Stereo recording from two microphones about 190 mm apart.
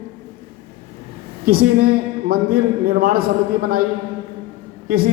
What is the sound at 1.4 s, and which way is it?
A man's voice, 50° right (ahead or behind).